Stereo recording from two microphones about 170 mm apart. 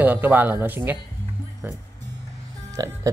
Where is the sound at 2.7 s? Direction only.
20° right (ahead or behind).